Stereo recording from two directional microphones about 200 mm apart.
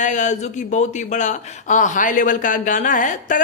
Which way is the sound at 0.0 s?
40° left (ahead or behind).